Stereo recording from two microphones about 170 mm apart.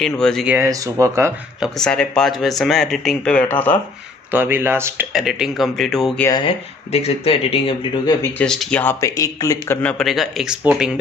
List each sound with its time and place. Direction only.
0.0 s speech: 5° left (ahead or behind)
0.5 s speech: 15° right (ahead or behind)
1.6 s speech: 5° left (ahead or behind)
4.3 s speech: 10° right (ahead or behind)
5.1 s speech: centre (ahead or behind)
6.4 s speech: 35° left (ahead or behind)
8.2 s speech: 5° left (ahead or behind)
9.0 s speech: 20° left (ahead or behind); by 11.0 s 5° right (ahead or behind)